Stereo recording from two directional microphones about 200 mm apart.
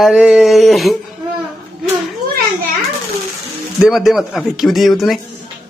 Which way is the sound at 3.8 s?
Centre (ahead or behind).